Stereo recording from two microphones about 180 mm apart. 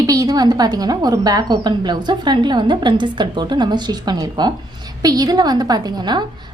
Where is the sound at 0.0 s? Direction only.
20° right (ahead or behind).